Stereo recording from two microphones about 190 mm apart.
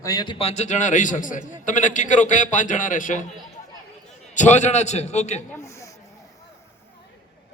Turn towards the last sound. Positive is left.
turn(degrees=15)  # may be behind; listen again after turning